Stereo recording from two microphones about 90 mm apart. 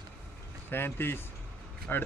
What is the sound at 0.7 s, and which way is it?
Speech, 25° left (ahead or behind).